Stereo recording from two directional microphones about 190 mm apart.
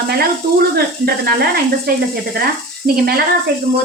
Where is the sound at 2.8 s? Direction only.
35° right (ahead or behind).